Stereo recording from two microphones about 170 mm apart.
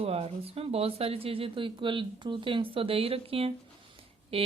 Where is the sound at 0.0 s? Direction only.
35° right (ahead or behind).